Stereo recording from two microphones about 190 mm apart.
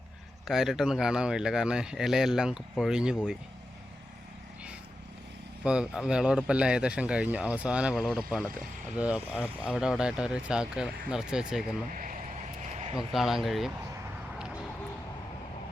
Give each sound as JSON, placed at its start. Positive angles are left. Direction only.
{"t": 0.4, "sound": "speech", "side_deg": 0}
{"t": 5.6, "sound": "speech", "side_deg": -5}
{"t": 11.9, "sound": "speech", "side_deg": -45}
{"t": 12.6, "sound": "a sound", "side_deg": -35}
{"t": 13.1, "sound": "speech", "side_deg": 0}